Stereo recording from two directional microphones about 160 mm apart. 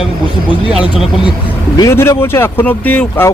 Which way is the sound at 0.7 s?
5° right (ahead or behind).